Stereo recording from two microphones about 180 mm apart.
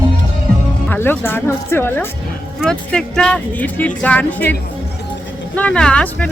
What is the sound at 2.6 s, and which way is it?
Speech, 5° left (ahead or behind).